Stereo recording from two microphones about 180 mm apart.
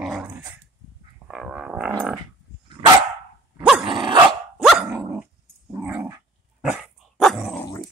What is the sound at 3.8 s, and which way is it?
Dog, 25° right (ahead or behind).